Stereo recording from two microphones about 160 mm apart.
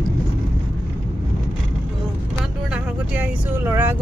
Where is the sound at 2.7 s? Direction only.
10° right (ahead or behind).